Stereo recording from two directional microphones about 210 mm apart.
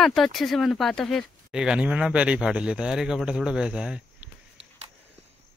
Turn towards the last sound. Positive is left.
turn(degrees=-5)  # may be behind; listen again after turning